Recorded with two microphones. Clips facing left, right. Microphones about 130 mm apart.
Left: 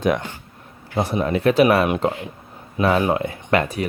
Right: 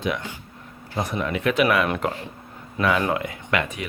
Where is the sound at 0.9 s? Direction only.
30° left (ahead or behind).